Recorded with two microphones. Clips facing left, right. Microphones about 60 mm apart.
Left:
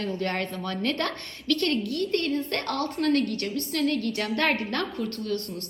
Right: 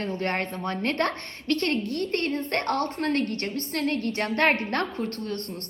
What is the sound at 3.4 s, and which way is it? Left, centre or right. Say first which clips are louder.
A woman's voice: left 1 dB; right.